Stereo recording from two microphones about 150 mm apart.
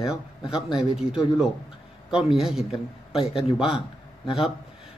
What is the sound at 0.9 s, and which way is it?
A man's voice, 5° right (ahead or behind).